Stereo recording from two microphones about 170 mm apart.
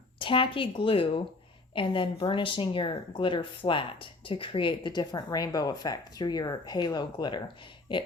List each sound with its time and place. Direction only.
0.2 s speech: 30° left (ahead or behind)